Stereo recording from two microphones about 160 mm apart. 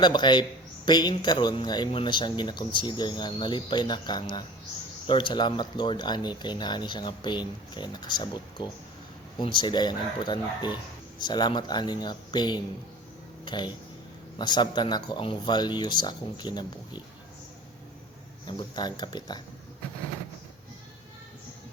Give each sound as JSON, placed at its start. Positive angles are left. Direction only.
{"t": 0.0, "sound": "speech", "side_deg": 30}
{"t": 18.4, "sound": "speech", "side_deg": 30}